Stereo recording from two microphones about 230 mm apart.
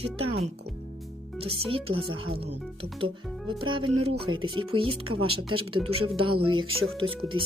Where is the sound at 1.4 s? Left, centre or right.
Right.